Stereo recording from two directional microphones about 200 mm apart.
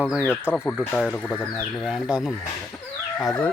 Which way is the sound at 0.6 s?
5° left (ahead or behind).